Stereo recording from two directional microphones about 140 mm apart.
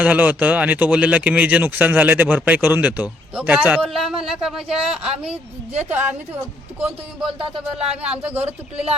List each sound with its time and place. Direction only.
0.0 s speech: 10° right (ahead or behind)
6.7 s speech: 10° right (ahead or behind)
8.7 s speech: 45° right (ahead or behind)